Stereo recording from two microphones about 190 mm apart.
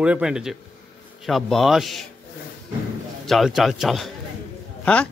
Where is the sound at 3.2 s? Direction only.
Centre (ahead or behind).